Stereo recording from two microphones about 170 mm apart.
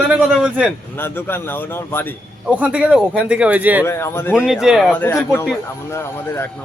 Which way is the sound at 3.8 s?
15° left (ahead or behind).